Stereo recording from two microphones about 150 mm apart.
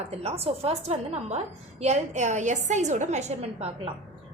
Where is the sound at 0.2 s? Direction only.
45° right (ahead or behind).